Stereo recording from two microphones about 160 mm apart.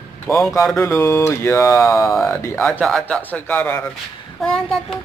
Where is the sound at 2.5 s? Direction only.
5° left (ahead or behind).